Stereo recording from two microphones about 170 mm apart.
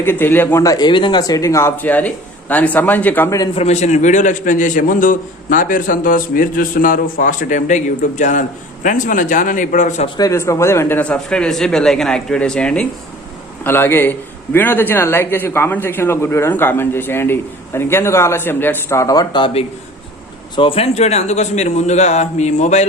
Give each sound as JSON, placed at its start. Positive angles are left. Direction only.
{"t": 0.0, "sound": "a man's voice", "side_deg": 10}
{"t": 3.5, "sound": "a man's voice", "side_deg": 40}
{"t": 10.2, "sound": "a man's voice", "side_deg": 20}